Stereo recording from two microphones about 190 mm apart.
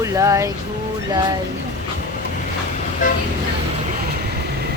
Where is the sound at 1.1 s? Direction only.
20° right (ahead or behind).